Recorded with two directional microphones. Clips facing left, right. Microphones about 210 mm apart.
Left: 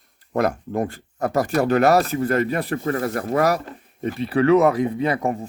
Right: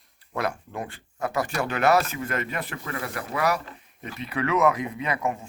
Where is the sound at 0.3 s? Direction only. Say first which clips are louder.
Left 8 dB; 40° left (ahead or behind).